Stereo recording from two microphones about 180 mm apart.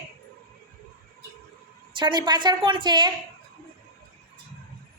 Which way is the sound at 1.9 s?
25° right (ahead or behind).